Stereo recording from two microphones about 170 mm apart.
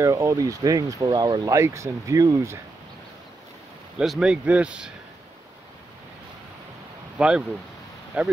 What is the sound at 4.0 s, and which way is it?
Speech, 5° right (ahead or behind).